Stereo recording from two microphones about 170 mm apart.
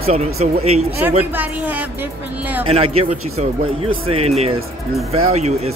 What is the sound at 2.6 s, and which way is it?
Speech, 35° right (ahead or behind).